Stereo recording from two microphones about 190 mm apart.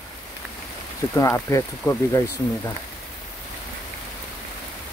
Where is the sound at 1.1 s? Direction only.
15° left (ahead or behind).